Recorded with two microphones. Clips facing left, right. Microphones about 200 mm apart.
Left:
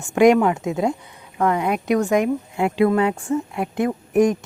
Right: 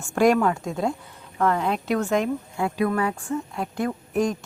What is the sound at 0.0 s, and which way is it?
Speech, 15° left (ahead or behind).